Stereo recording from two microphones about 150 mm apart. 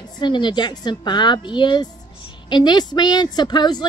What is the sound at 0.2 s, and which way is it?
Speech, 30° left (ahead or behind).